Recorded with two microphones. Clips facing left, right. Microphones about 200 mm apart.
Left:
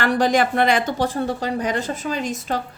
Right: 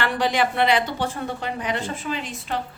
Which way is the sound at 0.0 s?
45° left (ahead or behind).